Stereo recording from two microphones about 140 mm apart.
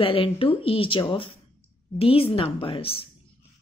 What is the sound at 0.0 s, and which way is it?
A woman's voice, 40° left (ahead or behind).